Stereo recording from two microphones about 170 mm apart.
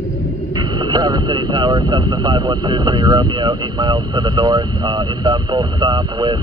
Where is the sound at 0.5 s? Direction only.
25° right (ahead or behind).